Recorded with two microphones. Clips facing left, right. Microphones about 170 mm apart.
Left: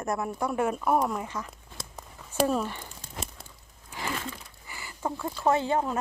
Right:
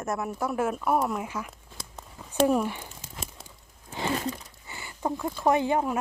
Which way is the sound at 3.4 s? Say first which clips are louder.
Right 3 dB; 20° right (ahead or behind).